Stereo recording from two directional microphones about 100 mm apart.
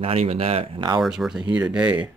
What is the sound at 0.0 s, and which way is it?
Speech, 90° right.